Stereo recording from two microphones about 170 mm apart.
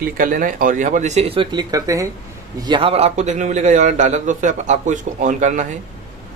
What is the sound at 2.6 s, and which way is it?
Speech, 30° right (ahead or behind).